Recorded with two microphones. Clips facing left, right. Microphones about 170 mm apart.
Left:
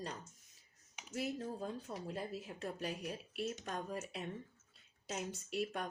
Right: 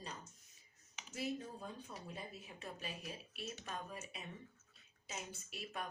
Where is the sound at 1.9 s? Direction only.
90° left.